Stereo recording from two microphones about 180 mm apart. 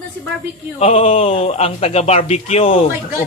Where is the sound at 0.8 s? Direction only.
35° left (ahead or behind).